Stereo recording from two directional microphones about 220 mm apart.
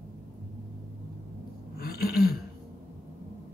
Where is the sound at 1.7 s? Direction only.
45° left (ahead or behind).